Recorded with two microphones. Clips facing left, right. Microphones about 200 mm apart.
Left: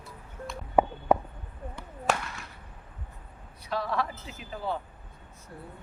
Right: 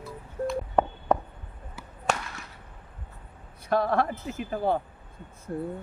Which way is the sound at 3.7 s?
55° right (ahead or behind).